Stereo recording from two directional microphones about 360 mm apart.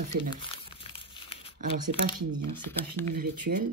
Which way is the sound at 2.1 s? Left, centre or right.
Right.